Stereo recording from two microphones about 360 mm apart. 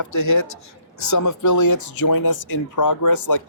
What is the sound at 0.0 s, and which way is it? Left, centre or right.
Speech, left.